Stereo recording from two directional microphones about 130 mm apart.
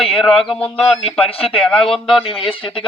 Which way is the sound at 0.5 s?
5° left (ahead or behind).